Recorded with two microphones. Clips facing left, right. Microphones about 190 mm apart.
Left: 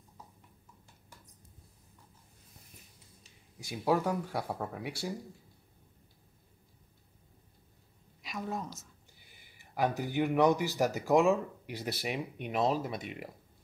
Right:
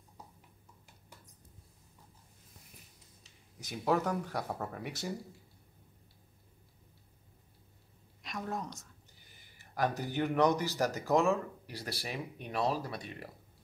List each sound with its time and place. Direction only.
3.5 s speech: 10° left (ahead or behind)
8.2 s a woman's voice: centre (ahead or behind)
9.3 s speech: 15° left (ahead or behind)